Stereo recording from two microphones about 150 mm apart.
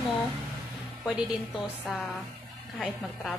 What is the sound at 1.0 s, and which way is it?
A woman's voice, centre (ahead or behind).